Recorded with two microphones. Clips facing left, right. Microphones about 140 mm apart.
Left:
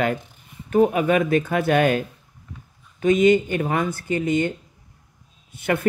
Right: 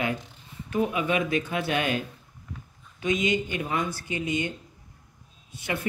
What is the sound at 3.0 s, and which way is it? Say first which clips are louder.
Speech: left 10 dB; 55° left (ahead or behind).